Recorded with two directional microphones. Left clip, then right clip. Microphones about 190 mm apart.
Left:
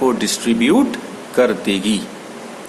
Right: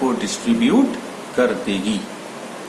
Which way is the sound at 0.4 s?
55° left (ahead or behind).